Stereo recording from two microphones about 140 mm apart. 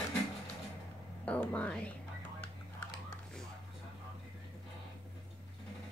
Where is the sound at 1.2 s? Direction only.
10° left (ahead or behind).